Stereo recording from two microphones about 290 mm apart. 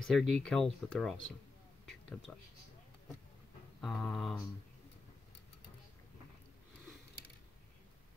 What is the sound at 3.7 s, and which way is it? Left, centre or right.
Speech, centre.